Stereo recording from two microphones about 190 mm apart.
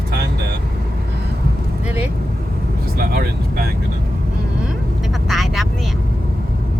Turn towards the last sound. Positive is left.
turn(degrees=0)  # may be behind; listen again after turning